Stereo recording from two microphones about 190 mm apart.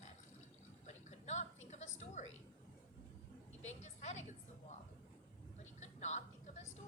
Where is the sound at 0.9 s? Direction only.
35° left (ahead or behind).